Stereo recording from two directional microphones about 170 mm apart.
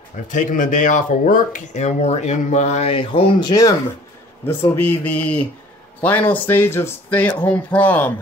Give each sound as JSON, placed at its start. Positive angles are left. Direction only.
{"t": 0.3, "sound": "speech", "side_deg": 50}
{"t": 4.5, "sound": "speech", "side_deg": 10}